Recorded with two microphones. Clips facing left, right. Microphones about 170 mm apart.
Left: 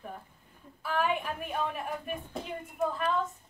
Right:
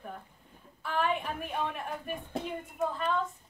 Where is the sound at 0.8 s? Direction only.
5° left (ahead or behind).